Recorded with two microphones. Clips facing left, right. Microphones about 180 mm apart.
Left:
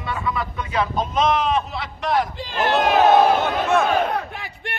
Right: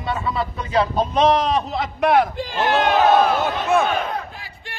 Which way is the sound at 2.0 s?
60° right (ahead or behind).